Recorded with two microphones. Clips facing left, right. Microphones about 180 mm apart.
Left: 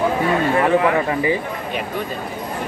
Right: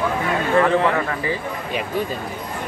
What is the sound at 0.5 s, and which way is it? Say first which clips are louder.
Speech: right 2 dB; 15° left (ahead or behind).